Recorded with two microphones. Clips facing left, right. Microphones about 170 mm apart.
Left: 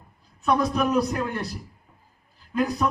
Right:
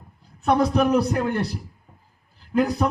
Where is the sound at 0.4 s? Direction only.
65° right (ahead or behind).